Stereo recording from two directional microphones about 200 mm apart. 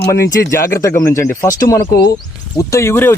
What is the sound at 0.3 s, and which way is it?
Speech, 15° left (ahead or behind).